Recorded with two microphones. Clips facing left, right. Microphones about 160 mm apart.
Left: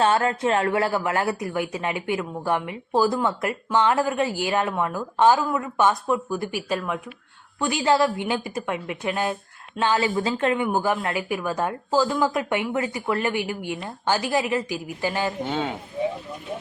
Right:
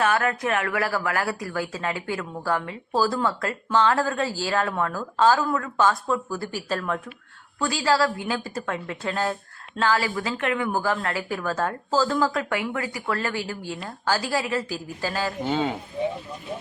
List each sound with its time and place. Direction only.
0.0 s a woman's voice: 25° left (ahead or behind)
15.4 s speech: centre (ahead or behind)